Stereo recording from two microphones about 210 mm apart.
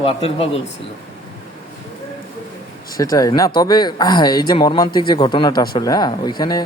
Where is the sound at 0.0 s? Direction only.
25° left (ahead or behind).